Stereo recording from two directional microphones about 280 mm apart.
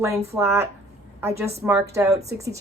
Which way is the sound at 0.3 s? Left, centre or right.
Centre.